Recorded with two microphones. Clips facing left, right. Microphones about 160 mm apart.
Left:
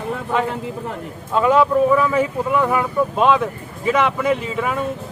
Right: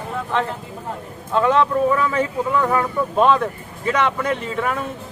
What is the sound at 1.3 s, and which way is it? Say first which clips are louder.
Speech: left 2 dB; 5° left (ahead or behind).